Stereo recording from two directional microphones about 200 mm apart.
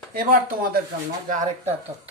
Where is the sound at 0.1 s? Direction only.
50° right (ahead or behind).